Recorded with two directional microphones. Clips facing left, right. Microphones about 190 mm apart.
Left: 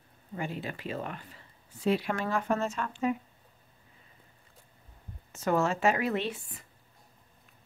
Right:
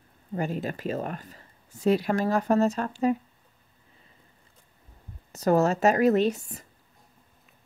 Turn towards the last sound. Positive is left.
turn(degrees=-40)  # may be behind; listen again after turning